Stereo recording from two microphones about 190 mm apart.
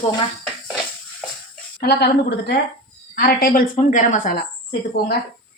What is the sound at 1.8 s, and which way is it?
A woman's voice, 60° left (ahead or behind).